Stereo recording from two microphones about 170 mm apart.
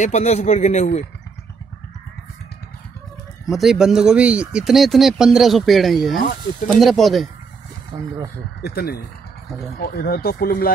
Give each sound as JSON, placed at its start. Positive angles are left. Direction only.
{"t": 0.0, "sound": "speech", "side_deg": 40}
{"t": 3.4, "sound": "speech", "side_deg": 0}
{"t": 8.6, "sound": "speech", "side_deg": 65}